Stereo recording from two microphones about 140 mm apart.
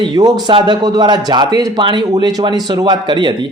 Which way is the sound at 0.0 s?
30° right (ahead or behind).